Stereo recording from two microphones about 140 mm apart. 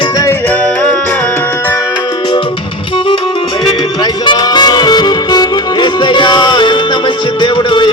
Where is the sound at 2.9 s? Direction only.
35° left (ahead or behind).